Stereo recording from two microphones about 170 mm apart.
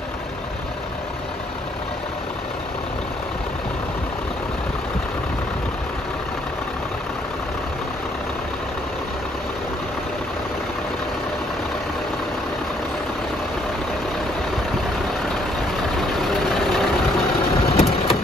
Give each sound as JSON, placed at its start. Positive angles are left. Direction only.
{"t": 16.2, "sound": "vehicle", "side_deg": 0}
{"t": 17.6, "sound": "vehicle", "side_deg": 35}